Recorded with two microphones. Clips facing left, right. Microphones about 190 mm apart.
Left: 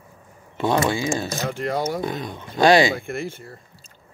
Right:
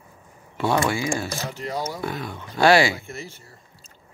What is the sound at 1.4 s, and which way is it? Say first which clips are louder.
Speech: left 5 dB; 55° left (ahead or behind).